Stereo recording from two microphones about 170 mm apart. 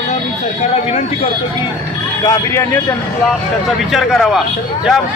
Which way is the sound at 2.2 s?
15° left (ahead or behind).